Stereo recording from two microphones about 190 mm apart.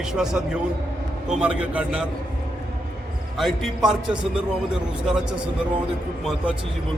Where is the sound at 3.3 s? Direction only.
Centre (ahead or behind).